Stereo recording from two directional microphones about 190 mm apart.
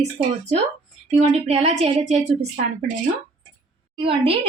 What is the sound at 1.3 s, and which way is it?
Speech, 35° right (ahead or behind).